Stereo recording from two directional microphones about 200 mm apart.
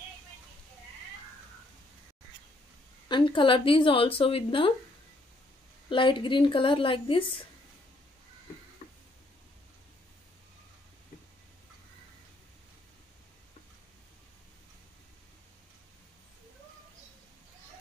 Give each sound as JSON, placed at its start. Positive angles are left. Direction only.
{"t": 3.1, "sound": "speech", "side_deg": 25}
{"t": 5.9, "sound": "speech", "side_deg": 25}